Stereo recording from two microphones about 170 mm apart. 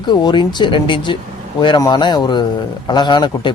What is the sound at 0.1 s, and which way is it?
Speech, 25° left (ahead or behind).